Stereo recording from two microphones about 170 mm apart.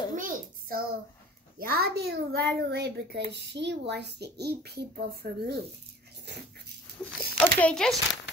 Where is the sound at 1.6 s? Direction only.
65° right (ahead or behind).